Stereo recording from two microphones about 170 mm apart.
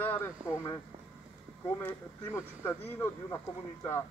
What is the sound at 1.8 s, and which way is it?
Speech, 15° left (ahead or behind).